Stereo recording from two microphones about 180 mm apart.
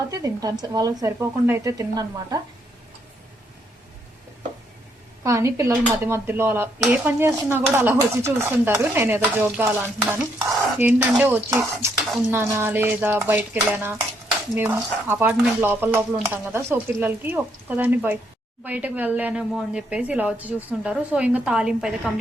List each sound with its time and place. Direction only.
0.1 s a woman's voice: 20° right (ahead or behind)
5.2 s dishes: 15° right (ahead or behind)